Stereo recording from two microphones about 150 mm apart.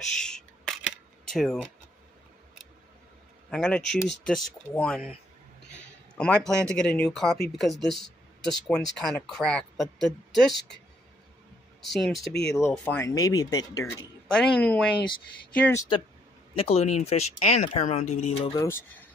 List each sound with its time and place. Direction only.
0.2 s a sound: 5° left (ahead or behind)
1.2 s speech: centre (ahead or behind)
3.4 s speech: 5° left (ahead or behind)
11.9 s speech: centre (ahead or behind)
12.3 s speech: 90° left
12.7 s speech: 10° left (ahead or behind)
13.1 s speech: 25° left (ahead or behind)
14.2 s speech: 5° left (ahead or behind)
16.5 s speech: 40° left (ahead or behind)
18.5 s speech: 20° left (ahead or behind)